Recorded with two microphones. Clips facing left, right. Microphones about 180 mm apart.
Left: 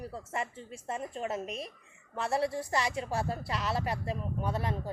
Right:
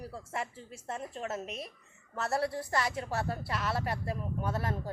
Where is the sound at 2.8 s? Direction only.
25° left (ahead or behind).